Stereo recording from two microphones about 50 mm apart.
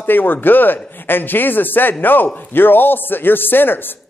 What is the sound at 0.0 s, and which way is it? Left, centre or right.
A man's voice, left.